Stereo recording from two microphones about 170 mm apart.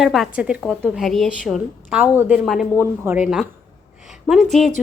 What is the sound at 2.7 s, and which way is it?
Speech, 15° right (ahead or behind).